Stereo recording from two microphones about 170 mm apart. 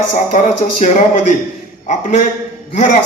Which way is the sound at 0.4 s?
45° left (ahead or behind).